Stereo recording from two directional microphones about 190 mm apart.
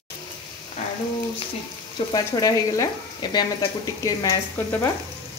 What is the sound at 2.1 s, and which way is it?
Frying, 20° left (ahead or behind).